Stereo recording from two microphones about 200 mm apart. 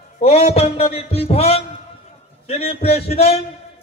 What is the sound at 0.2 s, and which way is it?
A man's voice, 30° left (ahead or behind).